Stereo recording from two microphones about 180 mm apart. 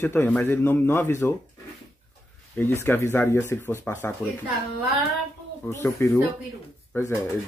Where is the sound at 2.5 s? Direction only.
15° left (ahead or behind).